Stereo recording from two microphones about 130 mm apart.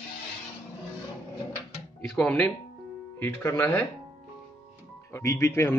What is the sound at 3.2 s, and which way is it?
Speech, 20° left (ahead or behind).